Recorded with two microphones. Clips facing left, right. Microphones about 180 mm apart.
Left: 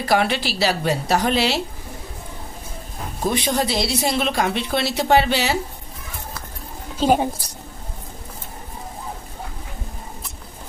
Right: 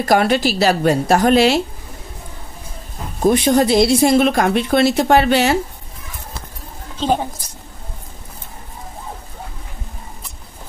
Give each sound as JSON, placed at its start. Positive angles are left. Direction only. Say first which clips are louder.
{"t": 0.0, "sound": "speech", "louder": "right 5 dB", "side_deg": -45}
{"t": 3.3, "sound": "speech", "louder": "right 8 dB", "side_deg": -50}
{"t": 7.0, "sound": "a woman's voice", "louder": "left 1 dB", "side_deg": 10}